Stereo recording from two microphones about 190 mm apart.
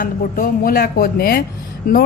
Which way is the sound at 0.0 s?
45° left (ahead or behind).